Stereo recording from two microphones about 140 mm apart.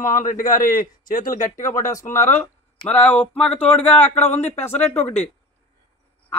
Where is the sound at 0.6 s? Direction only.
80° left.